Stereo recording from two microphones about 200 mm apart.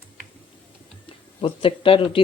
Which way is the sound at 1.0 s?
25° left (ahead or behind).